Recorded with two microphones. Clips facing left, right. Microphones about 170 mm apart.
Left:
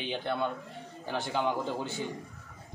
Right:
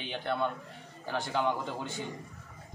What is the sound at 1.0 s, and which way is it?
Speech, 25° left (ahead or behind).